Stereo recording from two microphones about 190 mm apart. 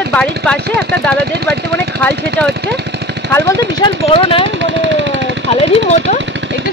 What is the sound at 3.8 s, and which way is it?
Speech, 25° left (ahead or behind).